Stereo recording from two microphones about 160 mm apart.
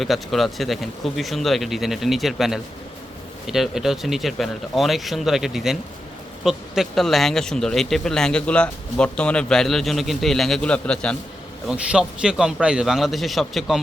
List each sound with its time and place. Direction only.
0.0 s speech: centre (ahead or behind)
11.7 s speech: 5° right (ahead or behind)